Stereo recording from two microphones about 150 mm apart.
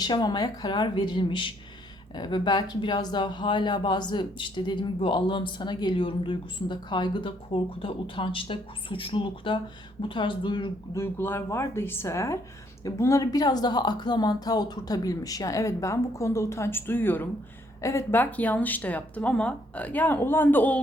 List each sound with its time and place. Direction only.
0.0 s a woman's voice: 30° left (ahead or behind)
10.9 s a woman's voice: 15° left (ahead or behind)